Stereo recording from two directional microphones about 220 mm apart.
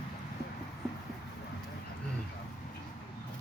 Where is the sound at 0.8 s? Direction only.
Centre (ahead or behind).